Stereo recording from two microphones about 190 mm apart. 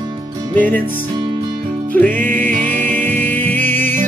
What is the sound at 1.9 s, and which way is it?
Music, 10° left (ahead or behind).